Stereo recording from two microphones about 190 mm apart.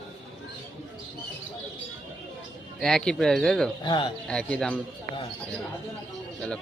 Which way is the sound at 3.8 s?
25° left (ahead or behind).